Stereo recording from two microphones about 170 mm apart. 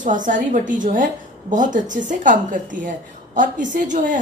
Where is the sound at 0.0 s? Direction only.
50° right (ahead or behind).